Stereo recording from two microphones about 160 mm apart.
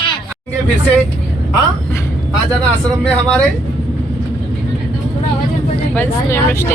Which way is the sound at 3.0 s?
5° left (ahead or behind).